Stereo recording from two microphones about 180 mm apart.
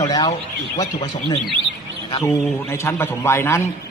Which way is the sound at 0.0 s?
20° left (ahead or behind).